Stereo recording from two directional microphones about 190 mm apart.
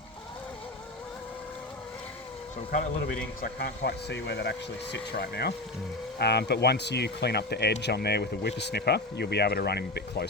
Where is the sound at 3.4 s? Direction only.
60° left (ahead or behind).